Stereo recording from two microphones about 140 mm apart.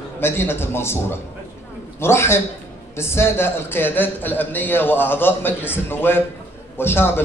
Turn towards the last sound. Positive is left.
turn(degrees=15)  # may be behind; listen again after turning